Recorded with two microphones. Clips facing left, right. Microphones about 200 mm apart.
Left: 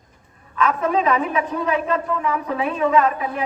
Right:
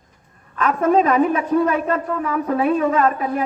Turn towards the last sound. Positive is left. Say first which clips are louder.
# right 1 dB
turn(degrees=-45)  # may be behind; listen again after turning